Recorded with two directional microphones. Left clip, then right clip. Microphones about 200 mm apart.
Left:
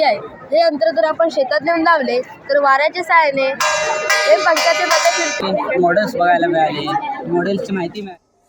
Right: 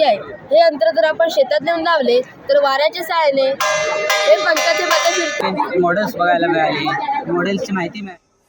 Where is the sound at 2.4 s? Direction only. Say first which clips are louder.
Left 2 dB; 30° right (ahead or behind).